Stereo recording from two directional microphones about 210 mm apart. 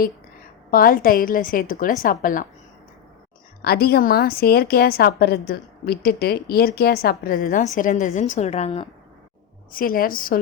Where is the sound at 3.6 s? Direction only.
50° left (ahead or behind); by 8.9 s 30° left (ahead or behind).